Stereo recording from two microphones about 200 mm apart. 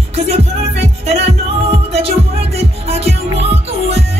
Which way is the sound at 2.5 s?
30° right (ahead or behind).